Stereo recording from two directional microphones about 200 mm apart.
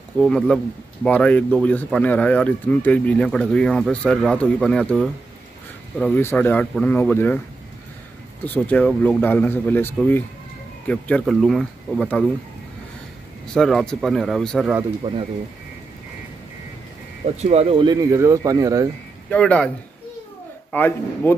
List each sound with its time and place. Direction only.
0.2 s speech: 5° left (ahead or behind)
8.5 s speech: 5° left (ahead or behind)
13.5 s speech: centre (ahead or behind)
15.0 s speech: 20° right (ahead or behind)
17.4 s speech: 30° right (ahead or behind); by 18.9 s 15° right (ahead or behind)
19.3 s speech: 5° left (ahead or behind)
20.7 s speech: 10° left (ahead or behind)